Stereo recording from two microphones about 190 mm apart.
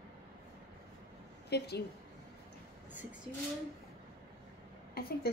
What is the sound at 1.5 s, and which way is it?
Speech, 60° left (ahead or behind).